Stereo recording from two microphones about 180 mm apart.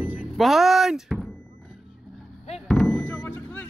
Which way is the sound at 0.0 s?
5° right (ahead or behind).